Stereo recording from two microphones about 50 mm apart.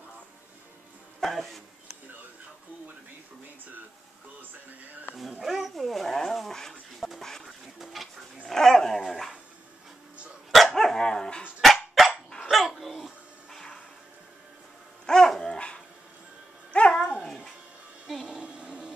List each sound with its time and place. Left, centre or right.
1.2 s speech: centre
4.4 s music: right
5.4 s speech: centre
7.2 s a sound: centre
7.8 s speech: centre
10.7 s dog: centre
11.6 s dog: centre
15.0 s dog: centre
16.7 s music: left
17.0 s dog: centre
18.0 s a sound: centre